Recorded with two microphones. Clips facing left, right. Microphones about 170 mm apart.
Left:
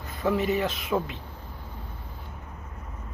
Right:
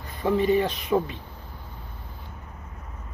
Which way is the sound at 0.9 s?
15° right (ahead or behind).